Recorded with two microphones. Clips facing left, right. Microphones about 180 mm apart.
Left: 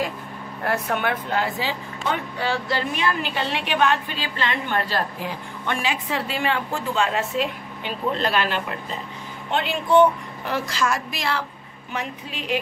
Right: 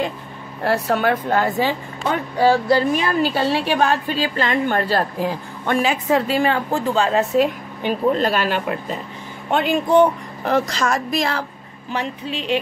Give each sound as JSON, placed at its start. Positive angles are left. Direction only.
{"t": 0.7, "sound": "a woman's voice", "side_deg": -35}
{"t": 11.9, "sound": "speech", "side_deg": -30}